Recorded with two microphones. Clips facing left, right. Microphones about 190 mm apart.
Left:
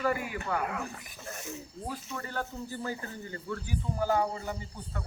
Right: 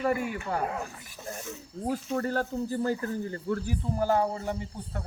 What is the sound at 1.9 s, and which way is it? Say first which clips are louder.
Speech: right 11 dB; 50° right (ahead or behind).